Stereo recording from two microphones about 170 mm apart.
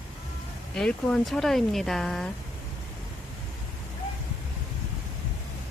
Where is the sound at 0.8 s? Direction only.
5° left (ahead or behind).